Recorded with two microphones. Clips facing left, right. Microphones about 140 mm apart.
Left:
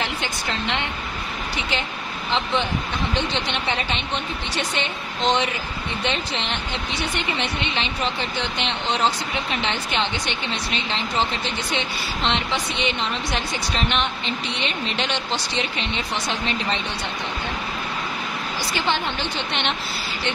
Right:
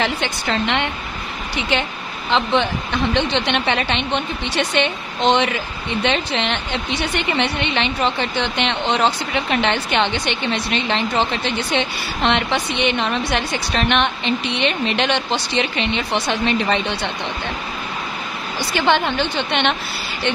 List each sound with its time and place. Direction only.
0.0 s a woman's voice: 80° right
2.3 s a woman's voice: 75° right (ahead or behind)
18.7 s a woman's voice: 65° right (ahead or behind)